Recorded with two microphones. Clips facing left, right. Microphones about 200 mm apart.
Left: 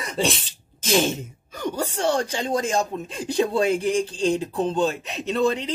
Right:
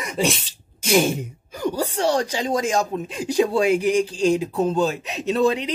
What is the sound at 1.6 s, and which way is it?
Speech, 35° right (ahead or behind).